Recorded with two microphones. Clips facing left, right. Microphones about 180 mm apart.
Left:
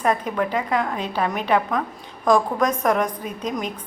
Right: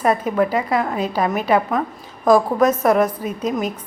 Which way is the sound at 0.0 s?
10° right (ahead or behind).